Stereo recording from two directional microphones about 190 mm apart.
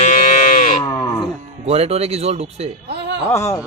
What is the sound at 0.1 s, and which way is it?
Sheep, 45° left (ahead or behind).